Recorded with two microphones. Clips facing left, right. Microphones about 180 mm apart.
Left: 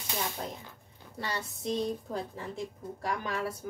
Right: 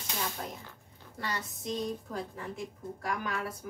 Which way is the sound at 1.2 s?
30° left (ahead or behind).